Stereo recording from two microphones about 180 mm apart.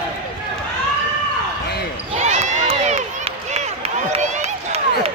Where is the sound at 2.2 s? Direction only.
40° right (ahead or behind).